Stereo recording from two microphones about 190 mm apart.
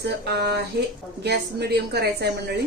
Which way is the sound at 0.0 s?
60° right (ahead or behind).